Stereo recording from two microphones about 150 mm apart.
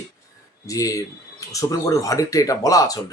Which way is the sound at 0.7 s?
20° left (ahead or behind).